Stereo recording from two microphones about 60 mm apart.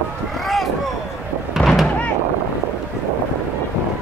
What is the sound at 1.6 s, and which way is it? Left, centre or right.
Thump, centre.